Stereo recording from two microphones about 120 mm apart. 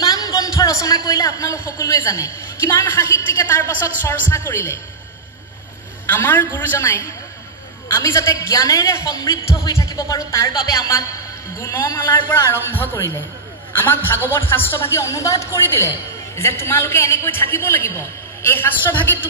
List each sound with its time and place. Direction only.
0.0 s a man's voice: 30° left (ahead or behind)
6.0 s a woman's voice: 15° left (ahead or behind)
10.5 s music: 30° left (ahead or behind)
11.6 s a man's voice: 20° left (ahead or behind)
13.7 s a man's voice: 20° left (ahead or behind)